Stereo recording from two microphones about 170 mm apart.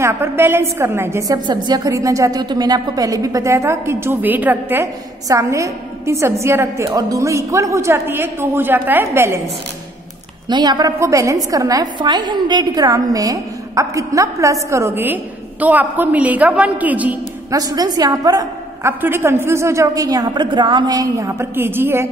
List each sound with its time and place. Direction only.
0.0 s a woman's voice: 15° right (ahead or behind)
10.5 s a woman's voice: 25° right (ahead or behind); by 17.2 s 10° right (ahead or behind)
17.5 s a woman's voice: 20° right (ahead or behind)